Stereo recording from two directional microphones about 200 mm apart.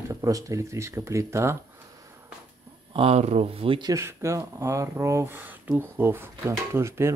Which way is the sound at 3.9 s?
15° right (ahead or behind).